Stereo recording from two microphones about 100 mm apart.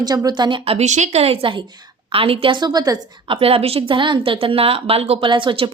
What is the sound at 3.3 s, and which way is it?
A woman's voice, 70° right (ahead or behind).